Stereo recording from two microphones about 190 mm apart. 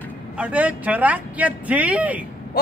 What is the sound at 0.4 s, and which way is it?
Speech, 5° right (ahead or behind).